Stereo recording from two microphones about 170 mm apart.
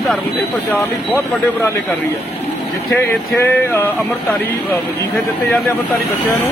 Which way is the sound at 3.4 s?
15° left (ahead or behind).